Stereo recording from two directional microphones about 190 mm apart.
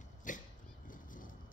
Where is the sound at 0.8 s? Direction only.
45° left (ahead or behind).